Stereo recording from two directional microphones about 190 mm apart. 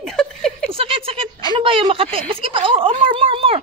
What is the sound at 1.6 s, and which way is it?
Speech, 30° right (ahead or behind).